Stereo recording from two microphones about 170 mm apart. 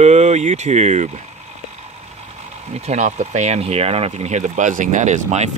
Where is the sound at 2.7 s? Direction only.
40° right (ahead or behind).